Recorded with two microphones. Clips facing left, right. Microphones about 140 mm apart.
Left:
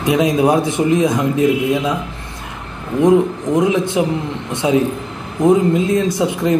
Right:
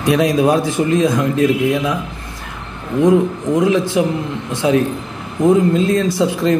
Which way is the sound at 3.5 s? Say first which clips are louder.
Even; 20° left (ahead or behind).